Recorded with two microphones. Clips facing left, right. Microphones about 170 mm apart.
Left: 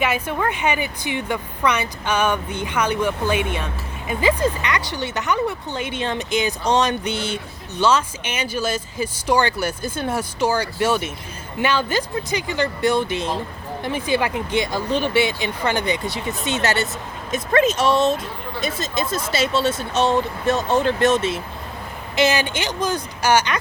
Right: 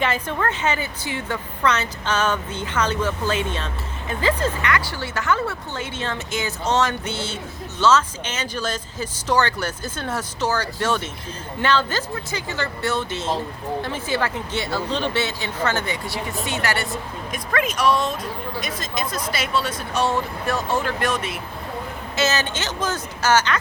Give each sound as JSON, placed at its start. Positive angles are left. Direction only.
{"t": 0.0, "sound": "a woman's voice", "side_deg": 10}
{"t": 22.1, "sound": "a woman's voice", "side_deg": 15}